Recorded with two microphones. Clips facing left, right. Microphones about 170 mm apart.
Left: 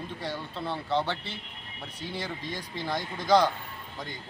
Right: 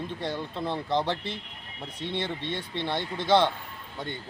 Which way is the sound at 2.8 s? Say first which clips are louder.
Right 1 dB; 30° right (ahead or behind).